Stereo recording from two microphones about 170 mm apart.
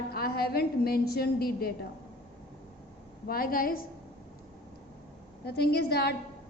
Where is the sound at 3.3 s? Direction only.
60° left (ahead or behind).